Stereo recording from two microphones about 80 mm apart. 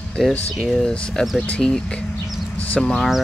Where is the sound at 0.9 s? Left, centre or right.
Centre.